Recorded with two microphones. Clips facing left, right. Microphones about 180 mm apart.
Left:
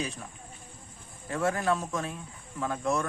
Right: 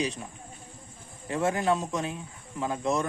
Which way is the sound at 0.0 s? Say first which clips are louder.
Right 4 dB; centre (ahead or behind).